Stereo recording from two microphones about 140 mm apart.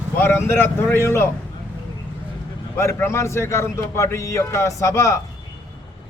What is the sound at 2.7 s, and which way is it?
A man's voice, 20° left (ahead or behind).